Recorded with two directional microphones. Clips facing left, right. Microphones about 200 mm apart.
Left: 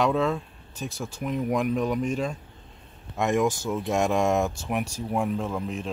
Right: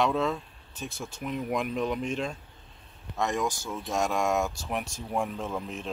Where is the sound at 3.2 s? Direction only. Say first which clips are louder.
Left 5 dB; 15° left (ahead or behind).